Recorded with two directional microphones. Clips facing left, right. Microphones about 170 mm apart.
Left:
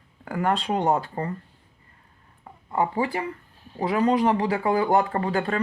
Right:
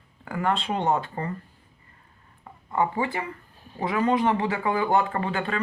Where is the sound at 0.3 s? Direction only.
40° left (ahead or behind).